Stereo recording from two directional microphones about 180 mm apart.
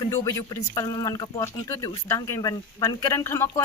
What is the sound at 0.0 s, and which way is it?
Speech, 20° left (ahead or behind).